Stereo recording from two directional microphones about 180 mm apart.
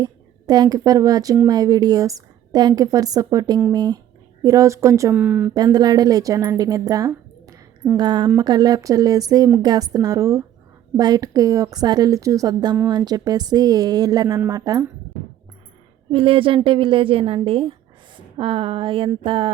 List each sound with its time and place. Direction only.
0.0 s a woman's voice: 20° right (ahead or behind)
5.5 s a woman's voice: 20° right (ahead or behind)
16.1 s a sound: 30° right (ahead or behind)
16.6 s a woman's voice: 25° right (ahead or behind)